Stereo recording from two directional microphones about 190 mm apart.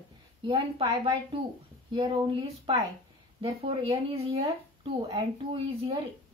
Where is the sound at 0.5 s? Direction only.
25° right (ahead or behind).